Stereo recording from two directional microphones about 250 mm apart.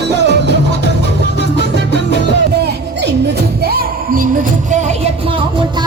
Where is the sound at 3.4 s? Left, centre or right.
Right.